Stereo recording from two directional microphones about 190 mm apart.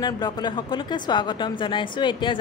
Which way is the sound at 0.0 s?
20° left (ahead or behind).